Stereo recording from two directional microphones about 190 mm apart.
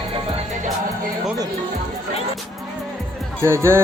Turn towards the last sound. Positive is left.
turn(degrees=-15)  # may be behind; listen again after turning